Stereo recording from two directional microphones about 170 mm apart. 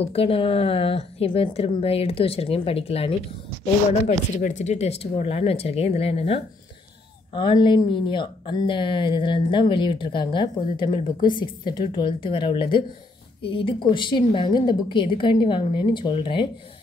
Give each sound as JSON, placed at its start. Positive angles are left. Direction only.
{"t": 0.0, "sound": "a woman's voice", "side_deg": 35}
{"t": 4.4, "sound": "a woman's voice", "side_deg": 45}